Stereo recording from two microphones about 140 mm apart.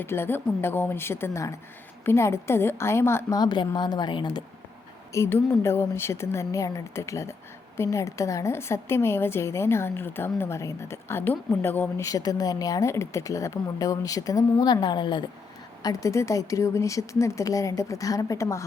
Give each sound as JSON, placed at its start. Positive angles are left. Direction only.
{"t": 0.0, "sound": "a woman's voice", "side_deg": 15}
{"t": 5.1, "sound": "a woman's voice", "side_deg": 20}
{"t": 12.0, "sound": "a woman's voice", "side_deg": 25}